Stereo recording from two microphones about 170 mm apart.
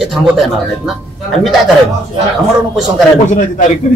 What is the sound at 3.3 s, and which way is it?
Speech, 50° left (ahead or behind).